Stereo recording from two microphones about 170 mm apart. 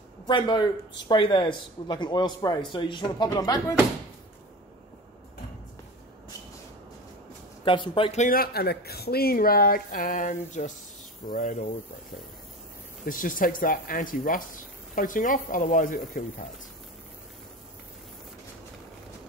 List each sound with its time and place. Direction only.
0.3 s speech: 25° left (ahead or behind)
7.6 s speech: 30° left (ahead or behind)
8.2 s speech: 60° left (ahead or behind)
13.0 s speech: 55° left (ahead or behind)